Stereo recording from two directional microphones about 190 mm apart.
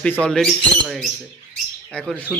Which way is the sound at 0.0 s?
5° left (ahead or behind).